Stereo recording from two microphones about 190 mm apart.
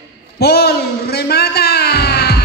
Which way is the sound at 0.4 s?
55° left (ahead or behind).